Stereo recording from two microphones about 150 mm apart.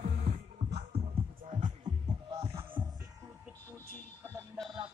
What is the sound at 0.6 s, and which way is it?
Music, 45° right (ahead or behind).